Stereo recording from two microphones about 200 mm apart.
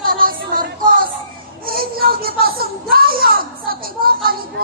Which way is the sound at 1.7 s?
50° right (ahead or behind).